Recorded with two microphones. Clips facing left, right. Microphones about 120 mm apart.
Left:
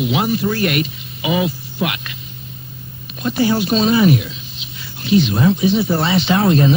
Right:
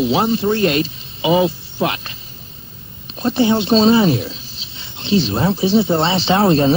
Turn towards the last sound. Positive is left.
turn(degrees=-30)  # may be behind; listen again after turning